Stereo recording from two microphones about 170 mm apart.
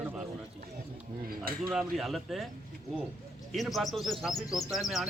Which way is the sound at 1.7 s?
Centre (ahead or behind).